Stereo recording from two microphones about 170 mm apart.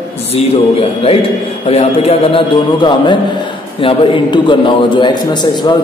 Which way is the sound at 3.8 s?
30° left (ahead or behind).